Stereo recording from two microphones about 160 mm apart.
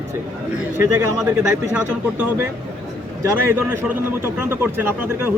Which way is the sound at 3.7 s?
10° right (ahead or behind).